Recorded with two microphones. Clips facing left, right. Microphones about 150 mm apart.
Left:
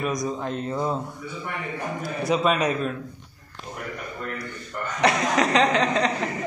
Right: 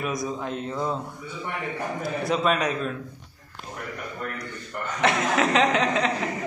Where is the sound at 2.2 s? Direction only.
Centre (ahead or behind).